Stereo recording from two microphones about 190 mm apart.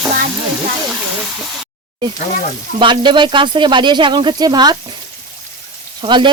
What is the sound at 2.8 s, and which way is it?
Speech, 25° right (ahead or behind).